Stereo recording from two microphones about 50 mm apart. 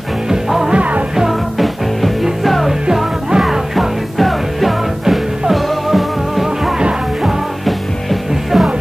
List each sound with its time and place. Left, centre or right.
0.3 s music: centre
0.7 s music: right
1.1 s music: centre
6.8 s music: centre
7.6 s music: centre